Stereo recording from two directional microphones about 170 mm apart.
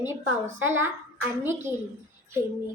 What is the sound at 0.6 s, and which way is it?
A child's voice, 15° right (ahead or behind).